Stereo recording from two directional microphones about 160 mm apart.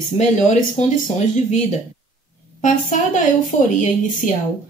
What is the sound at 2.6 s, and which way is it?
Speech, 50° left (ahead or behind).